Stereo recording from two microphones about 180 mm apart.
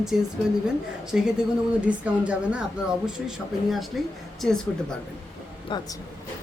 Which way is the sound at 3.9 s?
Centre (ahead or behind).